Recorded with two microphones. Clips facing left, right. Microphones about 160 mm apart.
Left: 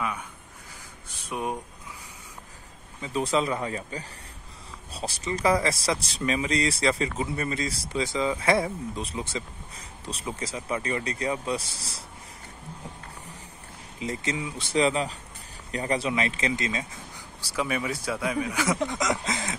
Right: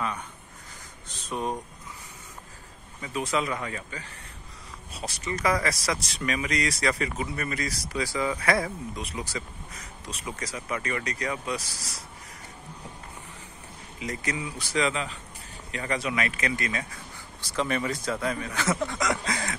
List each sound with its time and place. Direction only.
1.0 s speech: 10° left (ahead or behind)
3.0 s speech: 30° left (ahead or behind)
14.0 s speech: 25° left (ahead or behind)
17.4 s speech: 10° left (ahead or behind)